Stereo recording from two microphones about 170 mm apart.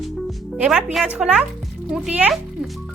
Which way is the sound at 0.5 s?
5° right (ahead or behind).